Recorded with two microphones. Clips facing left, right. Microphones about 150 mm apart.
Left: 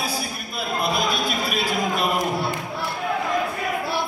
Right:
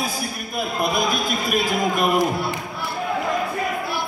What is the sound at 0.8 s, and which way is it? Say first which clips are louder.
A man's voice: right 1 dB; 45° right (ahead or behind).